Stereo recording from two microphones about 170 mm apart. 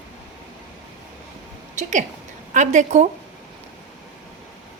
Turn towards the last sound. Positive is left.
turn(degrees=-45)  # may be behind; listen again after turning